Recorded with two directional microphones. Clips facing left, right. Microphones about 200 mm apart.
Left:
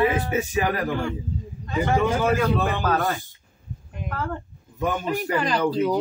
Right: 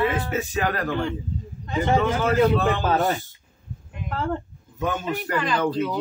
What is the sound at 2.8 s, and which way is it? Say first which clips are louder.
Speech: right 2 dB; 25° right (ahead or behind).